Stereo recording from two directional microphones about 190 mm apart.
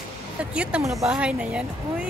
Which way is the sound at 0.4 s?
5° right (ahead or behind).